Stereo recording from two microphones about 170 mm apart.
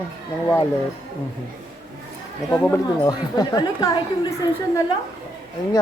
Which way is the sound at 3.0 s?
25° left (ahead or behind).